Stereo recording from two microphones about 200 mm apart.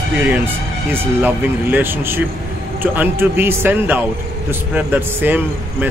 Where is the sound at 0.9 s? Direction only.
10° right (ahead or behind).